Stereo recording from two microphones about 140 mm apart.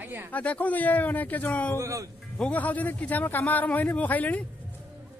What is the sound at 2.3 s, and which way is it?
A man's voice, 10° left (ahead or behind).